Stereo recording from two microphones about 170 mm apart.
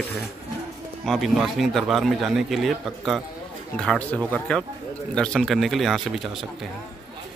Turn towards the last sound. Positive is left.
turn(degrees=0)  # may be behind; listen again after turning